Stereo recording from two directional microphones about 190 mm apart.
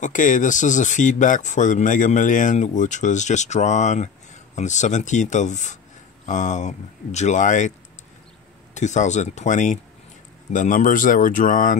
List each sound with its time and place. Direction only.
0.0 s speech: 45° left (ahead or behind)
8.7 s speech: 40° left (ahead or behind)